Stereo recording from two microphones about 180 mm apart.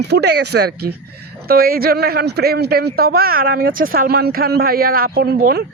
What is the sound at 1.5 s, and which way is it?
A man's voice, 55° right (ahead or behind).